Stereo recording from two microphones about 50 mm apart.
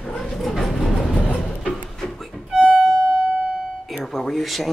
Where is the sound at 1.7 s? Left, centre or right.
Centre.